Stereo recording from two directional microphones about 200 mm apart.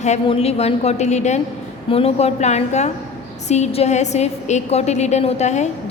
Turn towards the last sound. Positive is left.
turn(degrees=35)  # may be behind; listen again after turning